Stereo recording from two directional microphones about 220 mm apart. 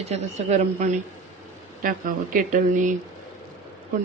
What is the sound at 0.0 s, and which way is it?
Speech, 30° right (ahead or behind).